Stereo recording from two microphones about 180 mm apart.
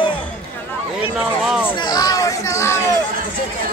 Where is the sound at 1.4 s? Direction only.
5° right (ahead or behind).